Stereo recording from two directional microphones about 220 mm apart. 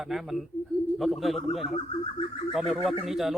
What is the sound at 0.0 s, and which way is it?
A man's voice, centre (ahead or behind).